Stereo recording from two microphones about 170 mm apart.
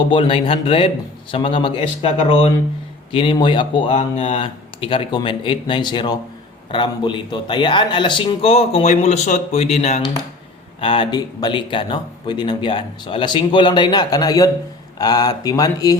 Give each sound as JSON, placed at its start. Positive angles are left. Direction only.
{"t": 0.1, "sound": "speech", "side_deg": 30}
{"t": 3.9, "sound": "speech", "side_deg": 40}